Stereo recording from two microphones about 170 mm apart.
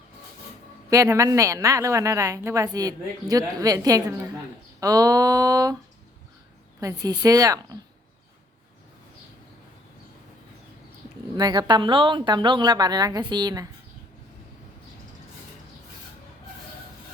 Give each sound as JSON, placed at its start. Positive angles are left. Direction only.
{"t": 0.9, "sound": "a woman's voice", "side_deg": -20}
{"t": 4.8, "sound": "a sound", "side_deg": -20}
{"t": 6.7, "sound": "a woman's voice", "side_deg": -20}
{"t": 11.3, "sound": "a woman's voice", "side_deg": -25}